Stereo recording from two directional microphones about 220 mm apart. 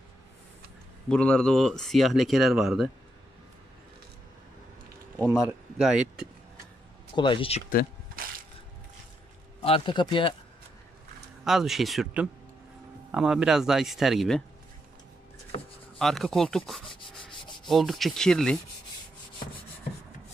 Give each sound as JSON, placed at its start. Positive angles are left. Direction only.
{"t": 1.0, "sound": "speech", "side_deg": 5}
{"t": 5.1, "sound": "speech", "side_deg": -5}
{"t": 7.2, "sound": "speech", "side_deg": 20}
{"t": 8.2, "sound": "crushing", "side_deg": -40}
{"t": 9.6, "sound": "speech", "side_deg": 25}
{"t": 11.4, "sound": "speech", "side_deg": 0}
{"t": 16.0, "sound": "speech", "side_deg": 0}
{"t": 16.8, "sound": "rub", "side_deg": 20}
{"t": 17.6, "sound": "speech", "side_deg": 0}